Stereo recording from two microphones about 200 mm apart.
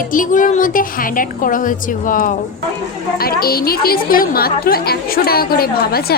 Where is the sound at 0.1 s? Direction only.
40° left (ahead or behind).